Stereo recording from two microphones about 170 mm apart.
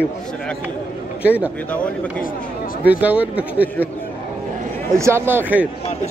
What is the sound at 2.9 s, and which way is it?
Speech, 10° right (ahead or behind).